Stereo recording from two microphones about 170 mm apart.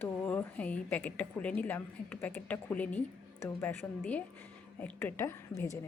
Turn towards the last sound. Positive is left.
turn(degrees=15)  # may be behind; listen again after turning